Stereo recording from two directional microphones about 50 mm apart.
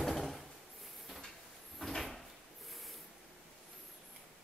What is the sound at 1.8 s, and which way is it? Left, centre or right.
Cupboard open or close, centre.